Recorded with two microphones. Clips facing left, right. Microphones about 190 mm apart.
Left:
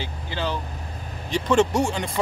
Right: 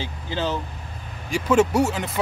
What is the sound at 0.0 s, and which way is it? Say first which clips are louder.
Vehicle: right 2 dB; 15° right (ahead or behind).